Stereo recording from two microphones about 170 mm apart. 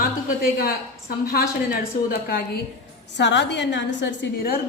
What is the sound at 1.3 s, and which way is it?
Speech, 60° left (ahead or behind).